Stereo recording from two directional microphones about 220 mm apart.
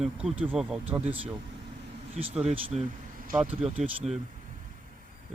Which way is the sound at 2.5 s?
30° right (ahead or behind).